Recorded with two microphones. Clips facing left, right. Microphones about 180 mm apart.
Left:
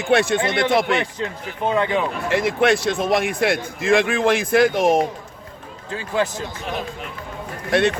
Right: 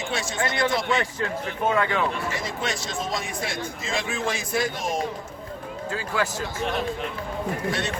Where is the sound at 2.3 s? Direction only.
60° left (ahead or behind).